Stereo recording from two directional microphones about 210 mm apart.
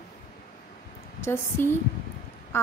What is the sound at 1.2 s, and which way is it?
A woman's voice, 10° left (ahead or behind).